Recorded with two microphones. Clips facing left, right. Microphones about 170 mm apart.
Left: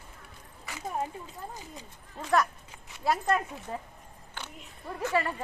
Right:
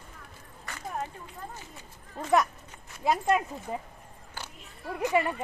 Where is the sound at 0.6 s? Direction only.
5° left (ahead or behind).